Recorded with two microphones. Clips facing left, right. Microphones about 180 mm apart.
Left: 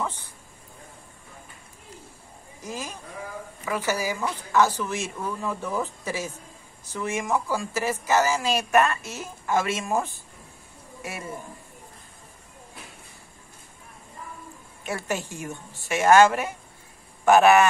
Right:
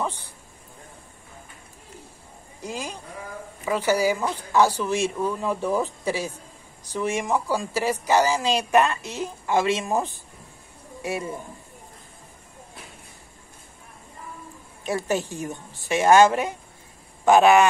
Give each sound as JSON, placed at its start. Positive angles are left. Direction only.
{"t": 2.6, "sound": "a woman's voice", "side_deg": -15}
{"t": 11.1, "sound": "a woman's voice", "side_deg": -15}
{"t": 14.9, "sound": "a woman's voice", "side_deg": -15}
{"t": 15.2, "sound": "a woman's voice", "side_deg": -35}
{"t": 15.9, "sound": "a woman's voice", "side_deg": -15}